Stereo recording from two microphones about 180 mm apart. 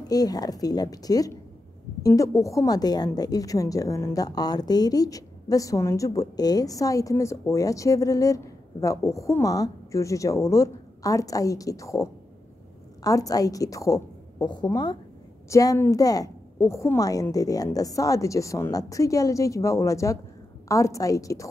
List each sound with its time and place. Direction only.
0.1 s a woman's voice: 20° left (ahead or behind)